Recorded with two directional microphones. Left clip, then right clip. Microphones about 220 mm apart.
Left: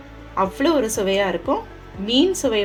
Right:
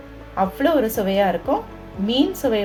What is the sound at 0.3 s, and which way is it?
A woman's voice, 25° left (ahead or behind).